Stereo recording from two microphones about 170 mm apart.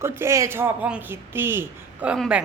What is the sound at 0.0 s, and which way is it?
Speech, 15° right (ahead or behind).